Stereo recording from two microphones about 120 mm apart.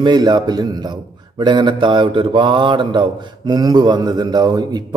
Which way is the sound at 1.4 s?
40° right (ahead or behind).